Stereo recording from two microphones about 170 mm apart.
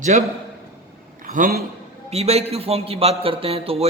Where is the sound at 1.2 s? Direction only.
55° right (ahead or behind).